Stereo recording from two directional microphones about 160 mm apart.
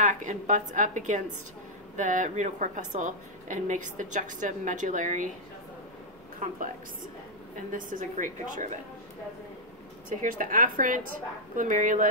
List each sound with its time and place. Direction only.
0.0 s a woman's voice: 50° right (ahead or behind)
7.7 s a woman's voice: 55° right (ahead or behind)
10.0 s a woman's voice: 60° right (ahead or behind)